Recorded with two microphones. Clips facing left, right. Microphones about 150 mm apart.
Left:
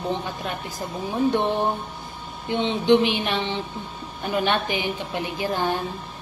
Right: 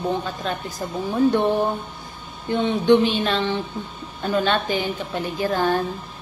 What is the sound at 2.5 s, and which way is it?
A woman's voice, 20° left (ahead or behind).